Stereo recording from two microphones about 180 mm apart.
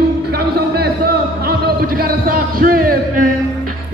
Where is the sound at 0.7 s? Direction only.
60° right (ahead or behind).